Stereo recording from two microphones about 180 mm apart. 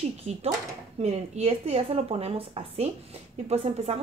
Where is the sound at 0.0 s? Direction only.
35° right (ahead or behind).